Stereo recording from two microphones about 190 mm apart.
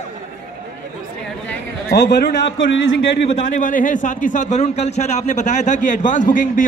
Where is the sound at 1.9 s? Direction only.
60° left (ahead or behind).